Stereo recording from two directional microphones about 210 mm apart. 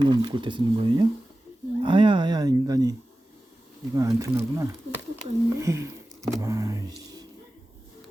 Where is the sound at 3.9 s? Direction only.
15° right (ahead or behind).